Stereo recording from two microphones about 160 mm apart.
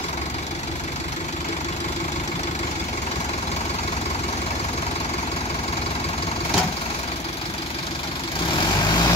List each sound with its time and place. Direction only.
8.5 s vehicle: 25° left (ahead or behind)